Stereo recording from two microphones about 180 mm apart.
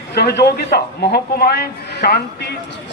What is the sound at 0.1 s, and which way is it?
A man's voice, 65° left (ahead or behind).